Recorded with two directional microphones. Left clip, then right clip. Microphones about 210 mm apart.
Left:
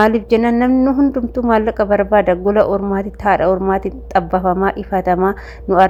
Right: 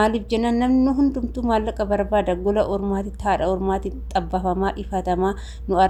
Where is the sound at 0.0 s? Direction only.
25° left (ahead or behind).